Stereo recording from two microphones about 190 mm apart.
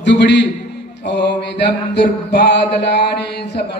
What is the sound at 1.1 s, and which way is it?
Mantra, 65° left (ahead or behind).